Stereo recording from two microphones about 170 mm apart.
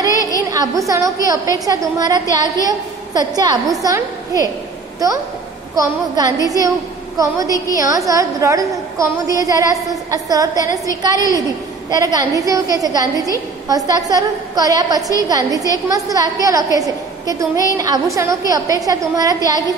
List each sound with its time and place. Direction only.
0.1 s a sound: 20° left (ahead or behind)
0.4 s a woman's voice: 20° right (ahead or behind)
5.8 s a woman's voice: 20° right (ahead or behind)